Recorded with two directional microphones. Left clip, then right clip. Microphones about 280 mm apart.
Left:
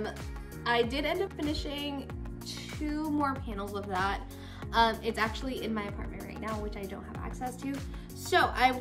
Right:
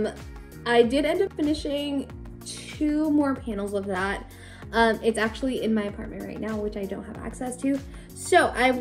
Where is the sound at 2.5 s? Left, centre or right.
Centre.